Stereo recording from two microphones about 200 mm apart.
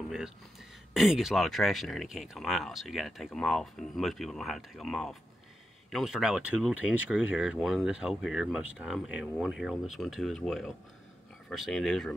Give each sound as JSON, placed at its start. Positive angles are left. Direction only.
{"t": 0.9, "sound": "speech", "side_deg": 0}